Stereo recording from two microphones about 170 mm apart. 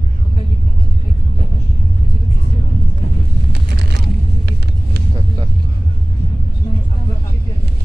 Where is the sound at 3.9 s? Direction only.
70° right (ahead or behind).